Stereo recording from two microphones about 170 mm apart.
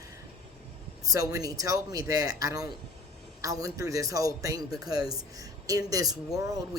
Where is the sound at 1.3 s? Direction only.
20° right (ahead or behind).